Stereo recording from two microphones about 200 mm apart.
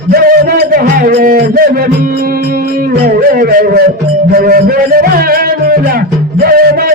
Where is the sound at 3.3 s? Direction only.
45° right (ahead or behind).